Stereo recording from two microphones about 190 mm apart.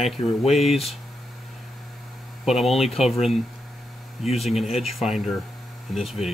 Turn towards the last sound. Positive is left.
turn(degrees=0)  # may be behind; listen again after turning